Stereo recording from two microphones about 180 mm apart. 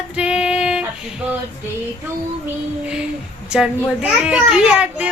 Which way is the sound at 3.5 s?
5° right (ahead or behind).